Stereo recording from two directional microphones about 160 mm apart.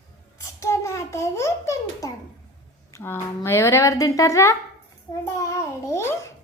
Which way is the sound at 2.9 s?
15° left (ahead or behind).